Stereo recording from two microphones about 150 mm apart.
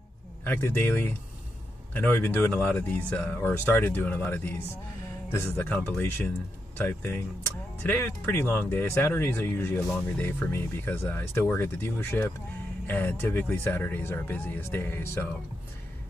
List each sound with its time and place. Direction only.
0.4 s speech: 15° left (ahead or behind)